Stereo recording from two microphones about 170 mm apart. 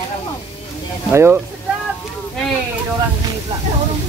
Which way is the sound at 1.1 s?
15° right (ahead or behind).